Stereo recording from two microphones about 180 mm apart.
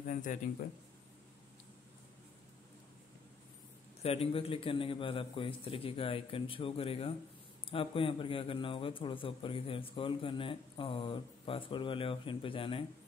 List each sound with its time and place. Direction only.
0.0 s speech: 45° left (ahead or behind)
4.0 s a man's voice: 35° left (ahead or behind)